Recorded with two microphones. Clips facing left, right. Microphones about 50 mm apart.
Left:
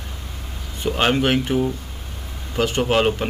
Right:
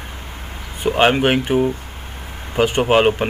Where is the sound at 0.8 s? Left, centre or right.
Right.